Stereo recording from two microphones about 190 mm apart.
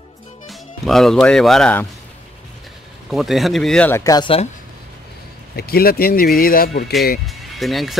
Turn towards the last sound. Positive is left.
turn(degrees=0)  # may be behind; listen again after turning